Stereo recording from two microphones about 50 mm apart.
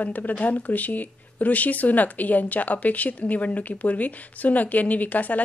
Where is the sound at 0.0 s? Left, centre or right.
Left.